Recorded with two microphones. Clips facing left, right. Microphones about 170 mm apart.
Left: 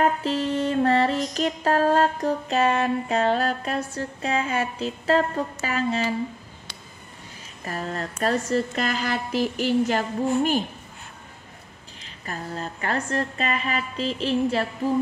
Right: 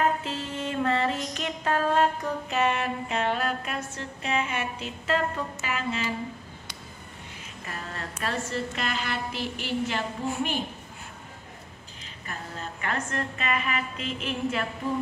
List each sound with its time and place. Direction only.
0.2 s music: 35° left (ahead or behind)
7.6 s a woman's voice: 40° left (ahead or behind)
12.3 s a woman's voice: 35° left (ahead or behind)